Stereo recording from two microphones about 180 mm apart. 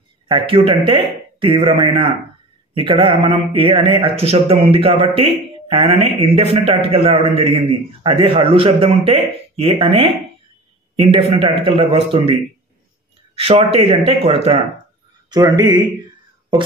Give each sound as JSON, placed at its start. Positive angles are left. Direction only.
{"t": 0.3, "sound": "a man's voice", "side_deg": -30}
{"t": 13.4, "sound": "a man's voice", "side_deg": -35}
{"t": 15.2, "sound": "speech", "side_deg": -20}